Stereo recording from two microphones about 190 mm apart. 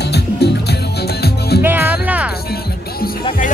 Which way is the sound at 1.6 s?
10° right (ahead or behind).